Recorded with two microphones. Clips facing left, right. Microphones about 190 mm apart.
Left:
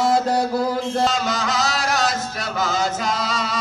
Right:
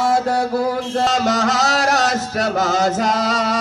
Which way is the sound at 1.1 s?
40° right (ahead or behind).